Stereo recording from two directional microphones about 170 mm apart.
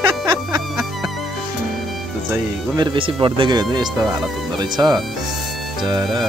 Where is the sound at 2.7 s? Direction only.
25° right (ahead or behind).